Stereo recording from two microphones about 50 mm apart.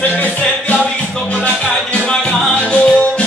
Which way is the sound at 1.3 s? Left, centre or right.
Left.